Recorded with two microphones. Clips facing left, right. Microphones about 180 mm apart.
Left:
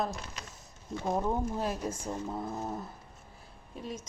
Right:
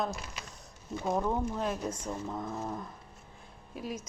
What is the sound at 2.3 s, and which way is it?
Stir, 25° left (ahead or behind).